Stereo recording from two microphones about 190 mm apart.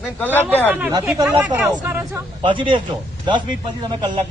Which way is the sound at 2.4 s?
25° right (ahead or behind).